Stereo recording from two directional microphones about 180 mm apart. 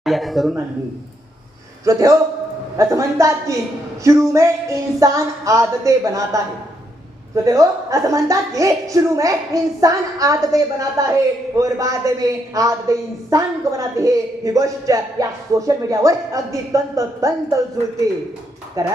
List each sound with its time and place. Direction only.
0.0 s speech: centre (ahead or behind)
1.8 s a woman's voice: 20° right (ahead or behind)
7.4 s a woman's voice: 20° right (ahead or behind)
18.8 s a woman's voice: 20° right (ahead or behind)